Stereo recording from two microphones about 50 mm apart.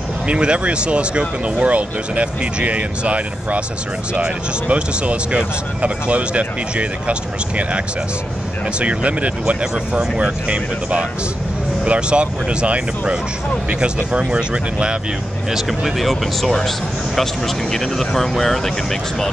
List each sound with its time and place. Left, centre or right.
0.3 s speech: right
15.5 s speech: centre